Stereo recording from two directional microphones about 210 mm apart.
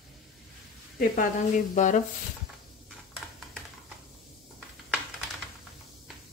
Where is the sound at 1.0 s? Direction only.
40° left (ahead or behind).